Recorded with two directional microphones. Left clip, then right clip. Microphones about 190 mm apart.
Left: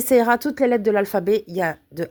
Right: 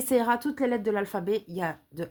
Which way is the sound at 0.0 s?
40° left (ahead or behind).